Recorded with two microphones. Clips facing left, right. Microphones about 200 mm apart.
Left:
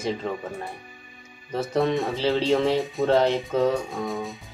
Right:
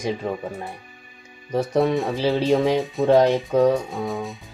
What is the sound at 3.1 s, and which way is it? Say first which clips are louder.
Speech: right 5 dB; 15° right (ahead or behind).